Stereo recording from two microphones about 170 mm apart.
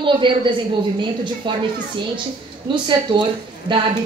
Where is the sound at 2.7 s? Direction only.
30° right (ahead or behind).